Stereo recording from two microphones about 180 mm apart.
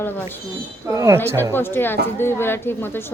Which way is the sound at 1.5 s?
10° left (ahead or behind).